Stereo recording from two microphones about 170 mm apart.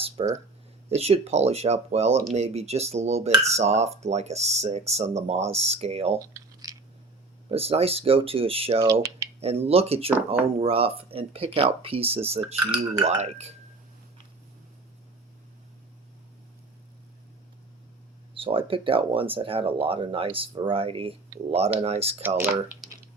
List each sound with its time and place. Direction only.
0.2 s speech: 35° right (ahead or behind)
6.1 s a sound: 20° right (ahead or behind)
7.5 s speech: 35° right (ahead or behind)
18.3 s speech: 30° right (ahead or behind)